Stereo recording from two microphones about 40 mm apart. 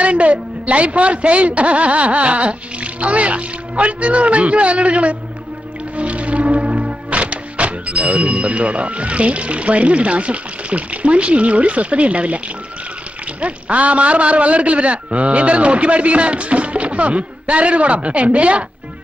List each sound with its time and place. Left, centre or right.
0.0 s a man's voice: right
5.9 s music: right
13.4 s a man's voice: right